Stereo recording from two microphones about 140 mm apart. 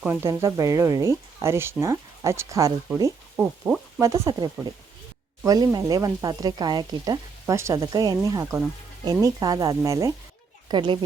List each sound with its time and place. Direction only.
0.0 s speech: 15° right (ahead or behind)
3.3 s a sound: 15° right (ahead or behind)
4.0 s speech: 20° right (ahead or behind)
5.5 s speech: 25° right (ahead or behind)
10.7 s a child's voice: 35° right (ahead or behind)